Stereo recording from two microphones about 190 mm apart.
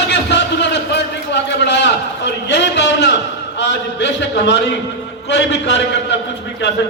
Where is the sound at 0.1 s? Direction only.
65° left (ahead or behind).